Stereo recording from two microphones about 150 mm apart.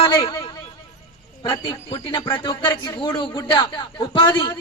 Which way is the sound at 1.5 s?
30° left (ahead or behind).